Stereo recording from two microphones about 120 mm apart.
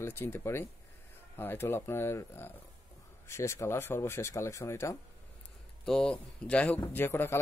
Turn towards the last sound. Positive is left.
turn(degrees=20)  # may be behind; listen again after turning